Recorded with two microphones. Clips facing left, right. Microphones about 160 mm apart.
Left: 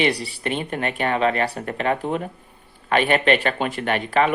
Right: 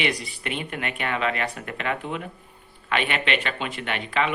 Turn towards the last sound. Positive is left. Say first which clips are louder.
# left 6 dB
turn(degrees=45)  # may be behind; listen again after turning